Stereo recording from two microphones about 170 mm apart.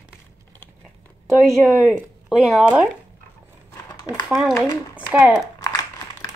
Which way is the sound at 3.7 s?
20° left (ahead or behind).